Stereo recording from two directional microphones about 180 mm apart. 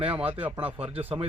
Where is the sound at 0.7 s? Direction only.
35° right (ahead or behind).